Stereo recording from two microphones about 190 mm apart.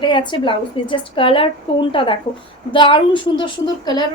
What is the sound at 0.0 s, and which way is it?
A woman's voice, 25° left (ahead or behind).